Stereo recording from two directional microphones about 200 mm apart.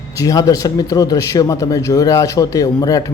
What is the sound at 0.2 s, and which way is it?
A man's voice, 15° left (ahead or behind).